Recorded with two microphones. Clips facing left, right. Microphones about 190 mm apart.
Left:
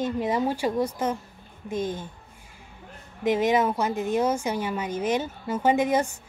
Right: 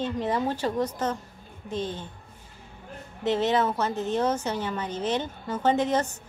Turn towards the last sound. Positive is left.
turn(degrees=10)  # may be behind; listen again after turning